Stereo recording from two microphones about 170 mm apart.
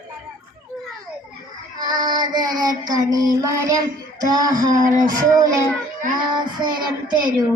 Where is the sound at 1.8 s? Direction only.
25° right (ahead or behind).